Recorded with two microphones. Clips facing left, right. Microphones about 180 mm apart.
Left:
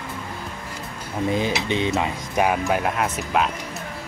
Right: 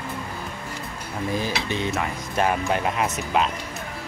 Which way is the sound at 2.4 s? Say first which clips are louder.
Left 1 dB; 5° left (ahead or behind).